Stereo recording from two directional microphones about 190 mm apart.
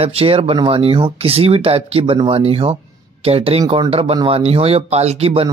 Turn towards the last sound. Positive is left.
turn(degrees=-30)  # may be behind; listen again after turning